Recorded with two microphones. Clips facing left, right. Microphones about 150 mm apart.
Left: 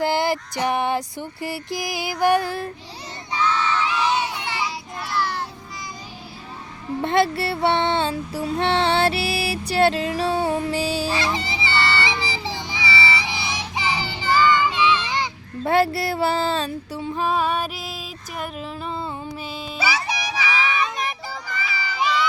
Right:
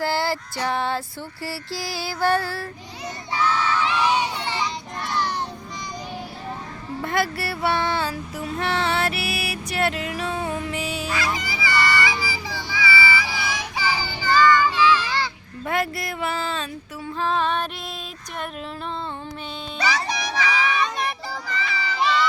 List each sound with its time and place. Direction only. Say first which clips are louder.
0.0 s a sound: left 3 dB; 20° left (ahead or behind)
3.4 s crowd: even; 10° right (ahead or behind)
7.0 s child singing: left 5 dB; 25° left (ahead or behind)
15.6 s speech: left 6 dB; 30° left (ahead or behind)
17.2 s music: left 1 dB; 10° left (ahead or behind)
19.8 s music: right 1 dB; 10° left (ahead or behind)
21.5 s a sound: right 2 dB; 5° left (ahead or behind)